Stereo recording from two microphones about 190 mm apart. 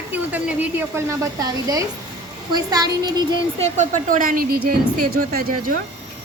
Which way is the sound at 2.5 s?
20° right (ahead or behind).